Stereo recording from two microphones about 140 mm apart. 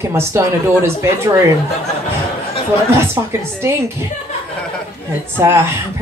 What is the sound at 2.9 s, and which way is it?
Speech, 20° right (ahead or behind).